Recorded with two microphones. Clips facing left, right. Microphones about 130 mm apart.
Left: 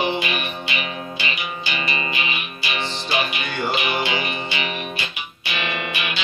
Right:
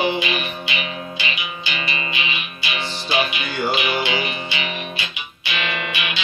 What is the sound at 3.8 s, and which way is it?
Music, 35° left (ahead or behind).